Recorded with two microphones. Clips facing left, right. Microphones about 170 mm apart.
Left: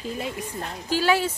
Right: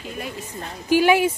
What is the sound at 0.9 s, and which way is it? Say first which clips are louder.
Speech: right 6 dB; 15° right (ahead or behind).